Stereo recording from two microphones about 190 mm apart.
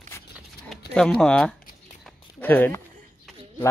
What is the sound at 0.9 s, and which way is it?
Speech, 5° left (ahead or behind).